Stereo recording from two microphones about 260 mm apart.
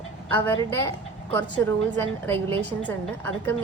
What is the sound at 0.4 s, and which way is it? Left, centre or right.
A woman's voice, centre.